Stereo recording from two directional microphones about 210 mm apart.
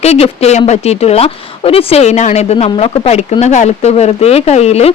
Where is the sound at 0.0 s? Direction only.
30° left (ahead or behind).